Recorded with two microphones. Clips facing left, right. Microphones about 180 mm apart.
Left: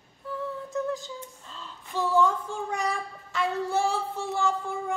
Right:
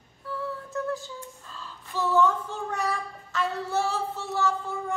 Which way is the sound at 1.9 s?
15° left (ahead or behind).